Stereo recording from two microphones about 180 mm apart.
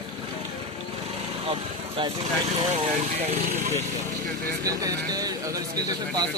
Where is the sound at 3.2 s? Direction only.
40° right (ahead or behind).